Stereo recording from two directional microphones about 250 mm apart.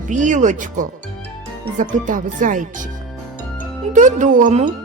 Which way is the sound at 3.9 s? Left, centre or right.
Right.